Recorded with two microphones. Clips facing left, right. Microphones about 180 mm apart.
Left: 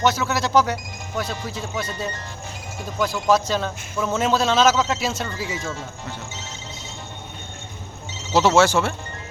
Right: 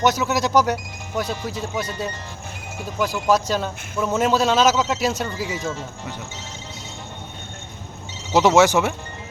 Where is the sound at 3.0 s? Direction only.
10° right (ahead or behind).